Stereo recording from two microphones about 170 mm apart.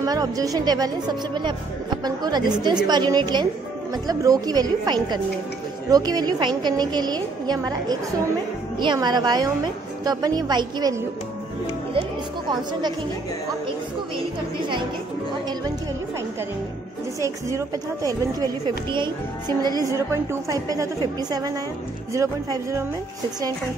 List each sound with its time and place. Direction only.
0.0 s a woman's voice: 20° right (ahead or behind)
17.2 s a woman's voice: 20° right (ahead or behind)